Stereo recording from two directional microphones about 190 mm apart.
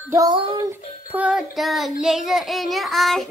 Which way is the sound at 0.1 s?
20° right (ahead or behind).